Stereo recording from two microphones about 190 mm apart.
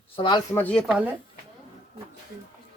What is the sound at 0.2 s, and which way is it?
Speech, 25° left (ahead or behind).